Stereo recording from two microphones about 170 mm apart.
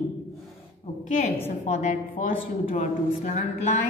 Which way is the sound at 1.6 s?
45° left (ahead or behind).